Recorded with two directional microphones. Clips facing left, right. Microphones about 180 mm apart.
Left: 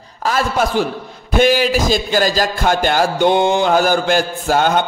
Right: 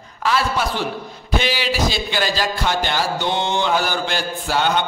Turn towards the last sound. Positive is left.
turn(degrees=45)  # may be behind; listen again after turning